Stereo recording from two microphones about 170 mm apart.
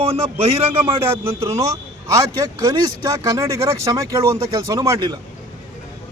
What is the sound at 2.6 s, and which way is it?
Speech, 20° right (ahead or behind).